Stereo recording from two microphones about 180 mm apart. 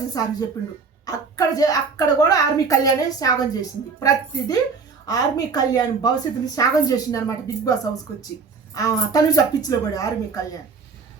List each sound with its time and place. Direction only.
0.1 s a child's voice: 20° left (ahead or behind)